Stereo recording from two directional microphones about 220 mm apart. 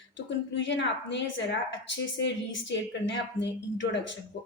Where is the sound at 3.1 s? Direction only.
55° left (ahead or behind).